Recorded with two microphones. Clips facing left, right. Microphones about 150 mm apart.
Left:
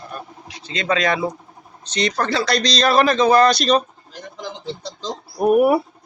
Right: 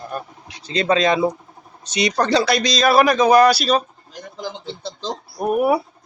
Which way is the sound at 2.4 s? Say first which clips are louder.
Right 1 dB; 5° right (ahead or behind).